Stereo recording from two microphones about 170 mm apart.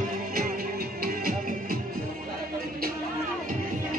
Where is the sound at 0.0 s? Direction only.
55° right (ahead or behind).